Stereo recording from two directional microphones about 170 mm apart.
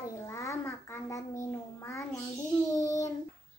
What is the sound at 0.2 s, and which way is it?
Child singing, 15° left (ahead or behind).